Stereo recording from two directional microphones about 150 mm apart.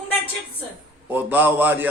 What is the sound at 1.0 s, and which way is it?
Speech, 15° right (ahead or behind).